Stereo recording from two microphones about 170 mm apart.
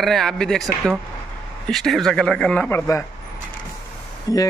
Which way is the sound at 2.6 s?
15° left (ahead or behind).